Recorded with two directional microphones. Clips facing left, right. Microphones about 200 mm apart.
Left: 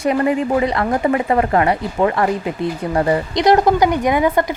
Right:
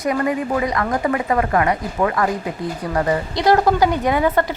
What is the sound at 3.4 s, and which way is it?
A woman's voice, 20° left (ahead or behind).